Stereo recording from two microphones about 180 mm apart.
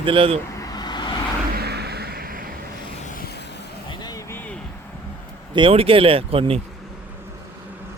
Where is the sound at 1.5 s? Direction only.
60° right (ahead or behind).